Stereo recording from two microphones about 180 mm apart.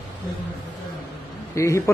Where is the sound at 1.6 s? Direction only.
15° left (ahead or behind).